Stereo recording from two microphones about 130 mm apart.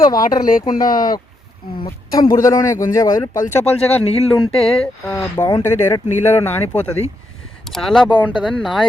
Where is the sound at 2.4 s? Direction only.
25° left (ahead or behind).